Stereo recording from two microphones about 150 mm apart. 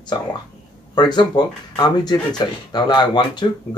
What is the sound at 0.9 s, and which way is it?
Speech, 30° left (ahead or behind).